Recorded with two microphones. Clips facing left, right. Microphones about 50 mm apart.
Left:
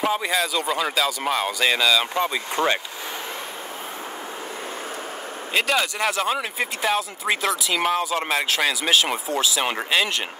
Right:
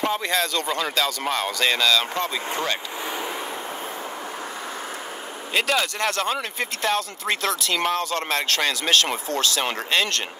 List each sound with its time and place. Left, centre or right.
0.0 s speech: centre
2.5 s speech: left
5.5 s speech: centre